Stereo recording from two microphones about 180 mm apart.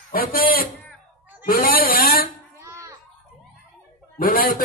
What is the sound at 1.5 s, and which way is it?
Speech, 55° left (ahead or behind).